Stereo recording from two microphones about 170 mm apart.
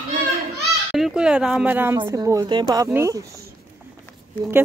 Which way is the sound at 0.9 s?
5° right (ahead or behind).